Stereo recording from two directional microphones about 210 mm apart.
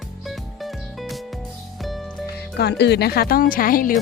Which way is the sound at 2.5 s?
50° left (ahead or behind).